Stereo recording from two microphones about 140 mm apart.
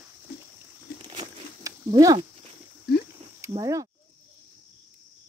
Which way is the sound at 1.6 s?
25° right (ahead or behind).